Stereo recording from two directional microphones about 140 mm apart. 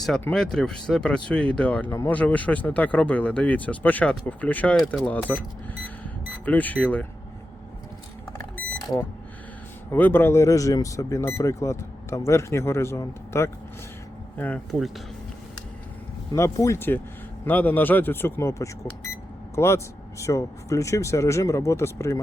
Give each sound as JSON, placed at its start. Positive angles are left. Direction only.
{"t": 0.0, "sound": "speech", "side_deg": 5}
{"t": 8.4, "sound": "vehicle", "side_deg": 15}
{"t": 9.9, "sound": "speech", "side_deg": 15}
{"t": 16.3, "sound": "speech", "side_deg": 20}